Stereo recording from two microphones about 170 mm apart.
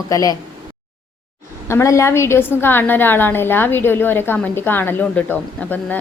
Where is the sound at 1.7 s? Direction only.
15° left (ahead or behind).